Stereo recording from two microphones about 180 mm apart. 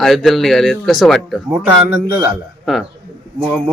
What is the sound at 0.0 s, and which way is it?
Speech, centre (ahead or behind).